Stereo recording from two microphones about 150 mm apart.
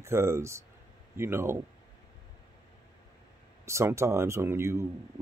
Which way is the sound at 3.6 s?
20° right (ahead or behind).